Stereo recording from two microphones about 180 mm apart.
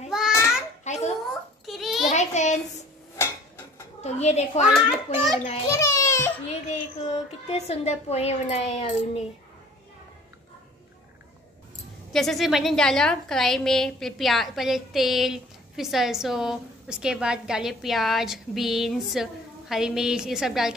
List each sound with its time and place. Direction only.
0.8 s a sound: 40° left (ahead or behind)
1.7 s a sound: centre (ahead or behind)
2.1 s child singing: 40° left (ahead or behind)
3.2 s a sound: 15° left (ahead or behind)
4.0 s a woman's voice: 35° left (ahead or behind)
4.7 s a woman's voice: centre (ahead or behind)
5.7 s a child's voice: 15° left (ahead or behind)
6.7 s speech: 40° left (ahead or behind)
12.1 s a woman's voice: centre (ahead or behind)